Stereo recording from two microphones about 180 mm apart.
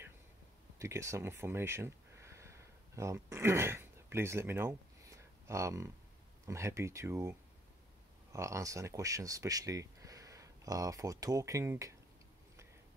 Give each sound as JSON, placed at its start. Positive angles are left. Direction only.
{"t": 0.7, "sound": "speech", "side_deg": -15}